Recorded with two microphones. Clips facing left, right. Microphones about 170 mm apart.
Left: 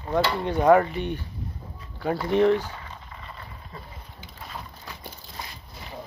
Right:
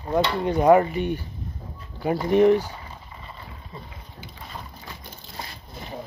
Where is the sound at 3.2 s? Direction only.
Centre (ahead or behind).